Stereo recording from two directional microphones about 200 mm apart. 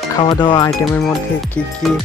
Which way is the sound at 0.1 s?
20° left (ahead or behind).